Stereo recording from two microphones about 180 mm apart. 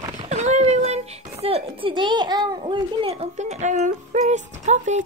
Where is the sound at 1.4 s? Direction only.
30° right (ahead or behind).